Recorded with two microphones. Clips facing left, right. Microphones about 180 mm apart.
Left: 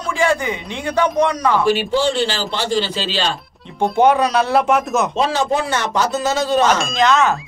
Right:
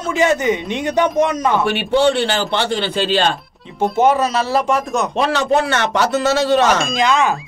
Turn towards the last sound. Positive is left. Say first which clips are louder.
# right 2 dB
turn(degrees=0)  # may be behind; listen again after turning